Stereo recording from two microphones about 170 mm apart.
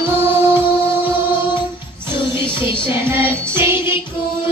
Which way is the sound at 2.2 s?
30° left (ahead or behind).